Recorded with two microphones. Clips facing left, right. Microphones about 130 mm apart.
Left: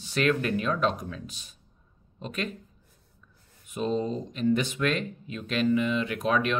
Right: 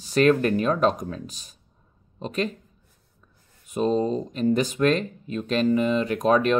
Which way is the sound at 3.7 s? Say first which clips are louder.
Right 6 dB; 40° right (ahead or behind).